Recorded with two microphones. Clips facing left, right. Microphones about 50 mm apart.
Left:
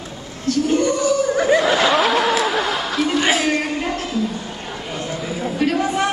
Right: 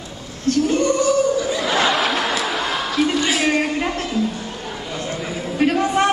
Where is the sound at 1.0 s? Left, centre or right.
Centre.